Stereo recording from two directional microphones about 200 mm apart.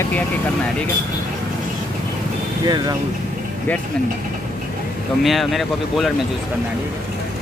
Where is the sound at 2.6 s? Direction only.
20° right (ahead or behind).